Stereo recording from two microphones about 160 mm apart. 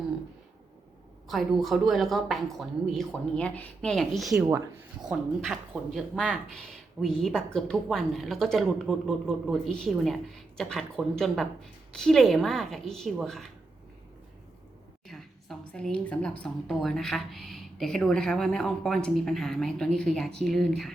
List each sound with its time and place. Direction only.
1.3 s a woman's voice: centre (ahead or behind)
15.0 s a woman's voice: centre (ahead or behind)